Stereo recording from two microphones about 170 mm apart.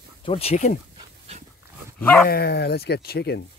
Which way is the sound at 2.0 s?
10° left (ahead or behind).